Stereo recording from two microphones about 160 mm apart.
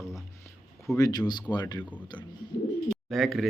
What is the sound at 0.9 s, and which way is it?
Speech, 25° left (ahead or behind).